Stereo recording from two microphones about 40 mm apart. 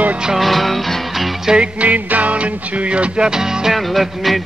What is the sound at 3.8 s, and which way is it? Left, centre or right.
Music, centre.